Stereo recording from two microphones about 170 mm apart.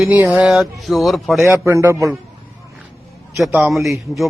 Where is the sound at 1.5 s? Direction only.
15° right (ahead or behind).